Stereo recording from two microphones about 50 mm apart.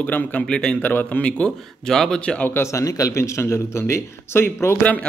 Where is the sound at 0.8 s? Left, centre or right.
Left.